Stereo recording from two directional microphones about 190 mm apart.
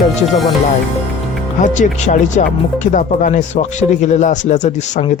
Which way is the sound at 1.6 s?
40° left (ahead or behind).